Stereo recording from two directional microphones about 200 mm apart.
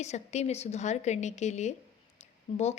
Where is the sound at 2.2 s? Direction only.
35° left (ahead or behind).